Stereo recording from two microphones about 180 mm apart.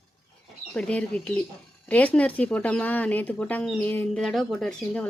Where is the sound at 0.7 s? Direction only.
5° left (ahead or behind).